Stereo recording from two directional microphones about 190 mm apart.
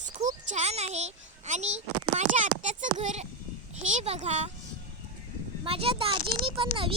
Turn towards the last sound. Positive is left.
turn(degrees=-25)  # may be behind; listen again after turning